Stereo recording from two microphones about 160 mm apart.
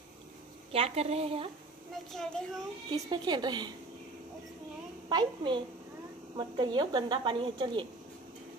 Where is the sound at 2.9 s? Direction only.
25° right (ahead or behind).